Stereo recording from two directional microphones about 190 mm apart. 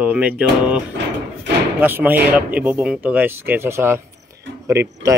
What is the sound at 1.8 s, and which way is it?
Speech, 10° right (ahead or behind).